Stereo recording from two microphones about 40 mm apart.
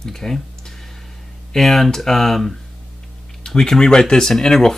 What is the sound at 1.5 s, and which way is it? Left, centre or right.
Speech, centre.